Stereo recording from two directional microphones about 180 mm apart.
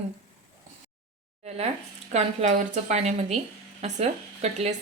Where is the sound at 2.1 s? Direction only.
40° right (ahead or behind).